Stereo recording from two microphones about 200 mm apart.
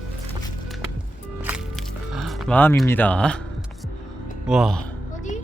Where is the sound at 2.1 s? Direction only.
Centre (ahead or behind).